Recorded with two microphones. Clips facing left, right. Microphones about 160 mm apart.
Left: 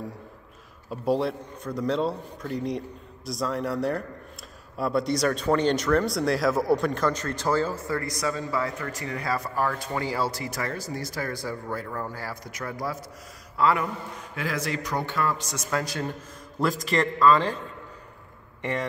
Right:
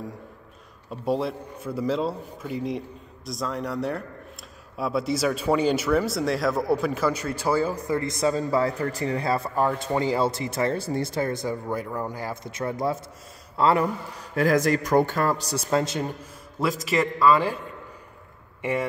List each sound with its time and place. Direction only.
0.8 s a man's voice: centre (ahead or behind); by 16.1 s 25° right (ahead or behind)
16.5 s a man's voice: centre (ahead or behind)
18.6 s speech: 10° right (ahead or behind)